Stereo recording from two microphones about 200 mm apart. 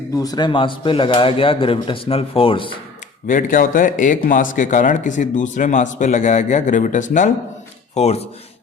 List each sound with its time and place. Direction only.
0.2 s a man's voice: 20° left (ahead or behind)
3.2 s speech: 40° left (ahead or behind)